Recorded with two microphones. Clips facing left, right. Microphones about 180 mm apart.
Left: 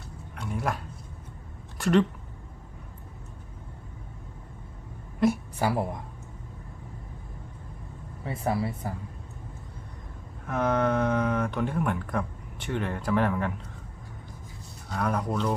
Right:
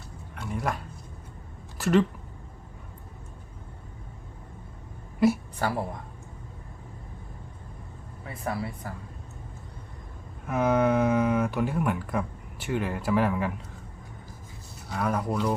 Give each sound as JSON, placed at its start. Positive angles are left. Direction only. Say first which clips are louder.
{"t": 0.3, "sound": "a sound", "louder": "even", "side_deg": 0}
{"t": 1.8, "sound": "speech", "louder": "even", "side_deg": 0}
{"t": 5.2, "sound": "a woman's voice", "louder": "right 1 dB", "side_deg": -5}
{"t": 5.5, "sound": "speech", "louder": "left 2 dB", "side_deg": 10}
{"t": 8.2, "sound": "speech", "louder": "left 4 dB", "side_deg": 25}
{"t": 10.4, "sound": "speech", "louder": "right 2 dB", "side_deg": -10}
{"t": 14.8, "sound": "speech", "louder": "right 1 dB", "side_deg": -5}